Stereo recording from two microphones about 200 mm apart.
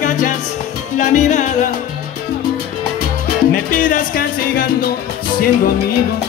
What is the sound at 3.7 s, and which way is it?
Music, 40° left (ahead or behind).